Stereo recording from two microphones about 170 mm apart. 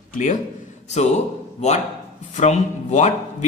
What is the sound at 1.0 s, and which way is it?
Speech, 40° left (ahead or behind).